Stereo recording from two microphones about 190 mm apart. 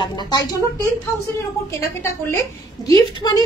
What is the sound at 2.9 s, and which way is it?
Speech, 20° left (ahead or behind).